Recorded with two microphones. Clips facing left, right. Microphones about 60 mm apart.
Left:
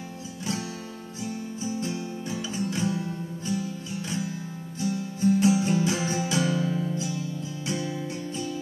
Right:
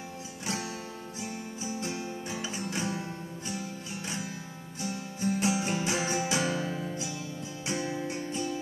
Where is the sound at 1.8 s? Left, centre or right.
Right.